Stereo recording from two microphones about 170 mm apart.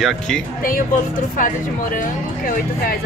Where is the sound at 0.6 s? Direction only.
55° left (ahead or behind).